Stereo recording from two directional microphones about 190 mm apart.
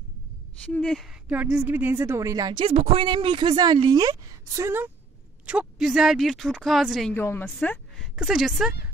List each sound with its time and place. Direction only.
0.7 s a woman's voice: centre (ahead or behind); by 4.8 s 15° right (ahead or behind)
5.5 s speech: 5° right (ahead or behind)
7.2 s a woman's voice: 10° left (ahead or behind)
8.2 s speech: 5° right (ahead or behind)